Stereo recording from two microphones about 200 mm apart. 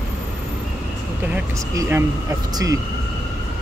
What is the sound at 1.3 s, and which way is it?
Speech, 15° right (ahead or behind).